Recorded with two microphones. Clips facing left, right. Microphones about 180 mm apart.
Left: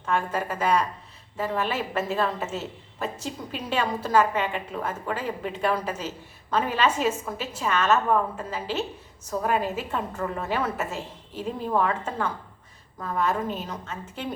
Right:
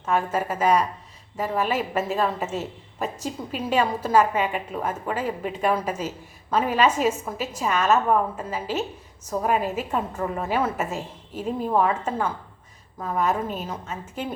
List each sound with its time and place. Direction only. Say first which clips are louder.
0.0 s a woman's voice: right 3 dB; 10° right (ahead or behind)